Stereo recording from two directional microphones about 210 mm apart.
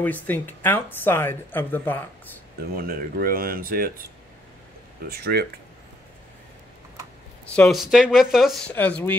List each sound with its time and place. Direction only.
0.0 s speech: 10° left (ahead or behind)
2.7 s speech: 45° right (ahead or behind)
5.0 s speech: 45° right (ahead or behind)
7.4 s speech: 5° left (ahead or behind)